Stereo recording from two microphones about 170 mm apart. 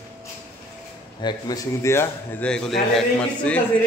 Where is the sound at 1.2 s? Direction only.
20° left (ahead or behind).